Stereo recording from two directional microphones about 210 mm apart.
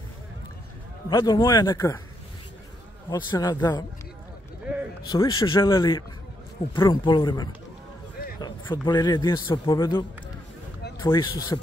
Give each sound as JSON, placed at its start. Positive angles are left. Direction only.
{"t": 1.1, "sound": "speech", "side_deg": 15}
{"t": 3.1, "sound": "speech", "side_deg": 15}
{"t": 5.0, "sound": "speech", "side_deg": 20}
{"t": 8.4, "sound": "a sound", "side_deg": 20}
{"t": 8.8, "sound": "speech", "side_deg": 20}